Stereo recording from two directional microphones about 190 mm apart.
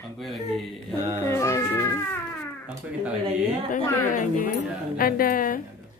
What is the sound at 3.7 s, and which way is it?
A woman's voice, 45° left (ahead or behind).